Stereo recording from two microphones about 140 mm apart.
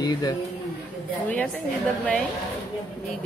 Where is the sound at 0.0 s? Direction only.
30° left (ahead or behind).